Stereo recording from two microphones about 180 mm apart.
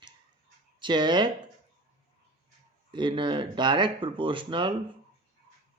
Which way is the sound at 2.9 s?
25° right (ahead or behind).